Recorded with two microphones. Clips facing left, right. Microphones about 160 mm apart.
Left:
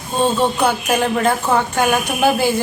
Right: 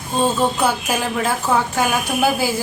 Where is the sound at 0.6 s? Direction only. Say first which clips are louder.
Left 3 dB; 5° right (ahead or behind).